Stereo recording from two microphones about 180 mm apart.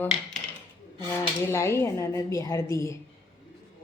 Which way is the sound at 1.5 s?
15° left (ahead or behind).